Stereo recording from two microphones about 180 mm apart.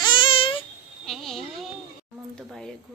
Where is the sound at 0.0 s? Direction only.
25° left (ahead or behind).